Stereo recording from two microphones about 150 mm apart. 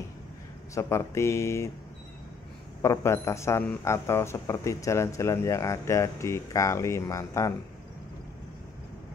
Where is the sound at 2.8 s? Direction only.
20° left (ahead or behind).